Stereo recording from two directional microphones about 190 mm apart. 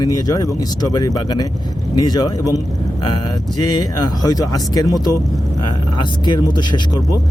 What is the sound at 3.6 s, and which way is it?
Speech, 20° left (ahead or behind).